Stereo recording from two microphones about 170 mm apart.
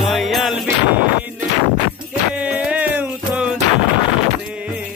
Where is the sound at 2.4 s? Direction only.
5° right (ahead or behind).